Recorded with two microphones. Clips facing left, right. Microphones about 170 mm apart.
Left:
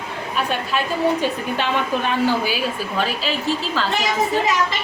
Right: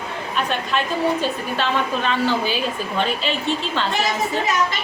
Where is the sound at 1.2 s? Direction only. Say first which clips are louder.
Left 1 dB; 15° left (ahead or behind).